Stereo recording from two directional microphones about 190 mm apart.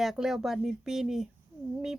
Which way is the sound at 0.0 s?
Centre (ahead or behind).